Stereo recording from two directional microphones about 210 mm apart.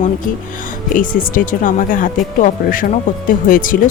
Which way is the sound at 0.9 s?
40° left (ahead or behind).